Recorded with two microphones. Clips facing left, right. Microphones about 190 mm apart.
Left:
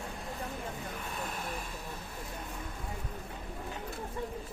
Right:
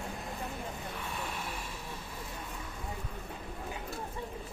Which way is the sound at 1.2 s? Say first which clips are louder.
Left 1 dB; 45° left (ahead or behind).